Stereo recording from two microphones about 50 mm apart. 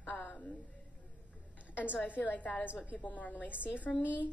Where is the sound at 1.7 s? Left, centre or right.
Right.